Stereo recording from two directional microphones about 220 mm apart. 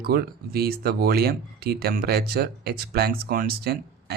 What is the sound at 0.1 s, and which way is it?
Speech, 45° right (ahead or behind).